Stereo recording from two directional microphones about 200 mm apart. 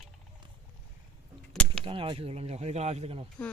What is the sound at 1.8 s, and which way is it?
Speech, 25° right (ahead or behind).